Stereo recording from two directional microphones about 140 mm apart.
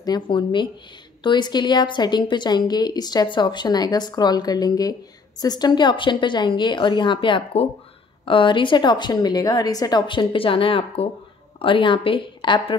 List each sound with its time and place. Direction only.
0.0 s a woman's voice: 30° left (ahead or behind)